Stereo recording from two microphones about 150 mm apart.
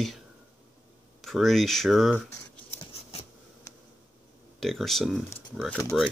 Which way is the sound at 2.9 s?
40° left (ahead or behind).